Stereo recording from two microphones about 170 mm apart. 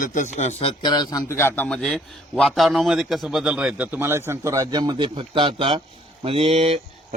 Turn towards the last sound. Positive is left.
turn(degrees=-35)  # may be behind; listen again after turning